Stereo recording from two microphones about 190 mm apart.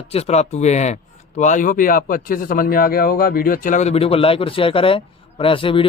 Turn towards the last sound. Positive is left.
turn(degrees=30)  # may be behind; listen again after turning